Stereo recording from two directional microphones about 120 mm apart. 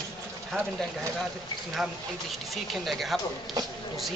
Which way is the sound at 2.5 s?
Centre (ahead or behind).